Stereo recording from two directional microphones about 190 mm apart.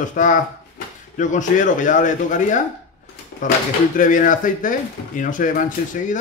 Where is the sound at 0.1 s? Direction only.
40° left (ahead or behind).